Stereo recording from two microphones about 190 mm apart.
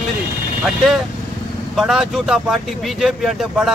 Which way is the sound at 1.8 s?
Centre (ahead or behind).